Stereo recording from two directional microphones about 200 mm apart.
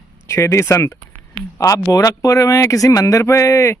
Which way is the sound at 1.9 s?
15° left (ahead or behind).